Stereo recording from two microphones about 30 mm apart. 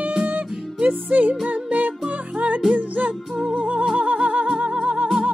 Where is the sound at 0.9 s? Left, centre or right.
Right.